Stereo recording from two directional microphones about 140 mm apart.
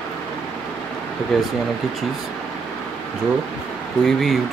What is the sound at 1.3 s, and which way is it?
Speech, centre (ahead or behind).